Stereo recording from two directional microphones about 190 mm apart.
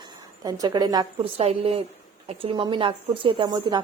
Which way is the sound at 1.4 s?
30° right (ahead or behind).